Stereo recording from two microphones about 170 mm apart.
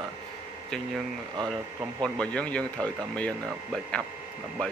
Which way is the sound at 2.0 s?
5° left (ahead or behind).